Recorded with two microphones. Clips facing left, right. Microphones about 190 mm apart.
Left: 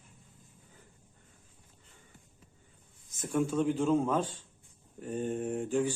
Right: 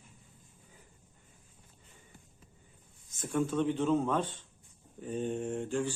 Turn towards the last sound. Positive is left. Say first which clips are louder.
# left 3 dB
turn(degrees=10)  # may be behind; listen again after turning